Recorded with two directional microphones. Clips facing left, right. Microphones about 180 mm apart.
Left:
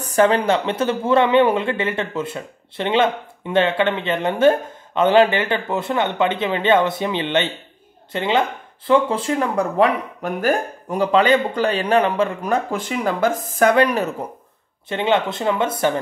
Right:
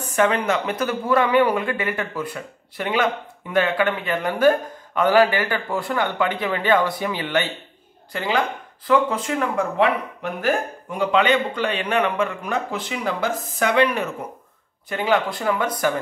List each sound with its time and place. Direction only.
0.0 s speech: 35° left (ahead or behind)
14.9 s speech: 25° left (ahead or behind)